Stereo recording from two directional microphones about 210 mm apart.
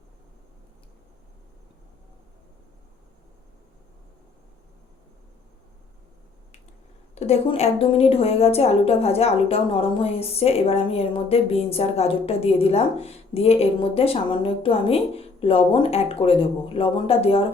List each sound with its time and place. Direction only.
7.2 s a woman's voice: 30° left (ahead or behind)